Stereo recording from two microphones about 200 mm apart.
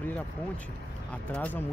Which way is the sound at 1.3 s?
5° left (ahead or behind).